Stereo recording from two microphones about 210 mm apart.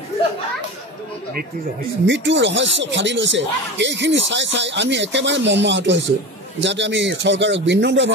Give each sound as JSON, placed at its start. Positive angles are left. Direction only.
{"t": 2.0, "sound": "speech", "side_deg": -60}